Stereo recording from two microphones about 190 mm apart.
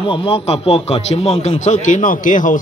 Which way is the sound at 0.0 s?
25° left (ahead or behind).